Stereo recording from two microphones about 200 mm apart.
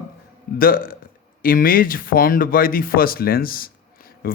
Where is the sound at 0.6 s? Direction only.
45° left (ahead or behind).